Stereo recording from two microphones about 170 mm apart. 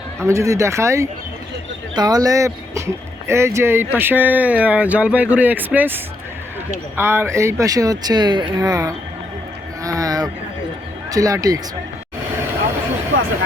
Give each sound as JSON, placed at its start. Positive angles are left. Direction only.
{"t": 0.2, "sound": "speech", "side_deg": -15}
{"t": 9.8, "sound": "a sound", "side_deg": -20}
{"t": 11.1, "sound": "speech", "side_deg": -20}